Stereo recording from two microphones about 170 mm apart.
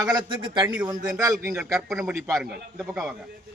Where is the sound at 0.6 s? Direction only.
10° right (ahead or behind).